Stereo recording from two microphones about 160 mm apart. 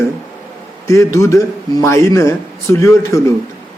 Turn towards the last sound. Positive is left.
turn(degrees=20)  # may be behind; listen again after turning